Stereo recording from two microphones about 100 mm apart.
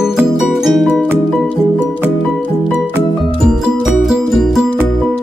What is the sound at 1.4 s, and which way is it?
Music, 15° left (ahead or behind).